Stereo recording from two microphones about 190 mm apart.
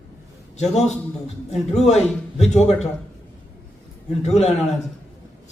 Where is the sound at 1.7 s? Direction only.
35° left (ahead or behind).